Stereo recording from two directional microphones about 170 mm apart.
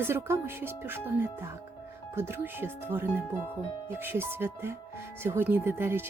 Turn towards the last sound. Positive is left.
turn(degrees=-15)  # may be behind; listen again after turning